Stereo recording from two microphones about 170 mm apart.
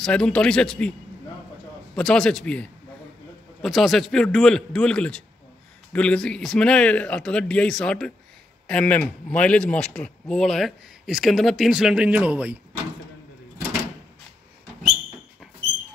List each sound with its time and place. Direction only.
0.0 s speech: 5° left (ahead or behind)
2.0 s speech: 5° left (ahead or behind)